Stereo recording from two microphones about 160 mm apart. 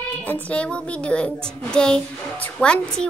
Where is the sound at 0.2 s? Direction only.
10° left (ahead or behind).